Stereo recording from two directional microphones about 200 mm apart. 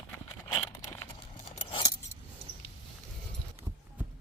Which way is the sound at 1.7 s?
25° left (ahead or behind).